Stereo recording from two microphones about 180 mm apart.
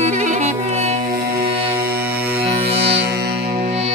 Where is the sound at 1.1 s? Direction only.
55° right (ahead or behind).